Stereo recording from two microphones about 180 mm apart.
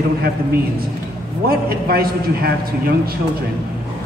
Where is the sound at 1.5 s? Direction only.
60° right (ahead or behind).